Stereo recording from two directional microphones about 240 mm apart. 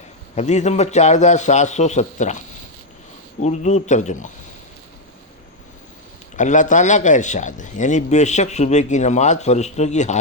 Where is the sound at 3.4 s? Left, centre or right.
Left.